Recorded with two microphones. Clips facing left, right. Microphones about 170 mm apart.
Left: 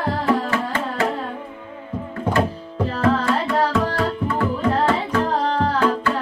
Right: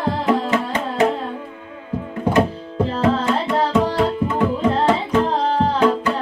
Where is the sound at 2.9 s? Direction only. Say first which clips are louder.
Even; 20° right (ahead or behind).